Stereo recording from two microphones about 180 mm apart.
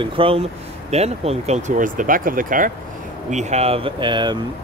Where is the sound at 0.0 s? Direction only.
30° right (ahead or behind).